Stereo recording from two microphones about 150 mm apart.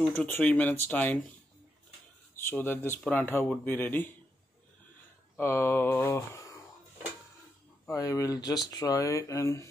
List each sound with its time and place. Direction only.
0.0 s speech: 10° left (ahead or behind)
2.3 s speech: 15° left (ahead or behind)
5.4 s speech: 15° left (ahead or behind)
7.8 s speech: 20° left (ahead or behind)